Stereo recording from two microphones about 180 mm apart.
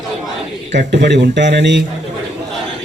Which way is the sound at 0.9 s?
70° right (ahead or behind).